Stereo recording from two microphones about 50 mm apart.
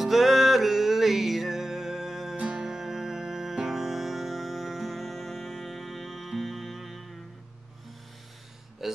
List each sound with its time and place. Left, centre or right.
0.0 s music: centre
2.3 s music: right
2.6 s music: centre
8.8 s hiccup: centre